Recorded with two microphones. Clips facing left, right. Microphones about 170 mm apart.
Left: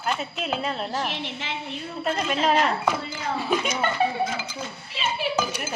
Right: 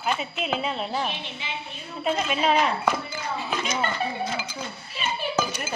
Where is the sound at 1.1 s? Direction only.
90° left.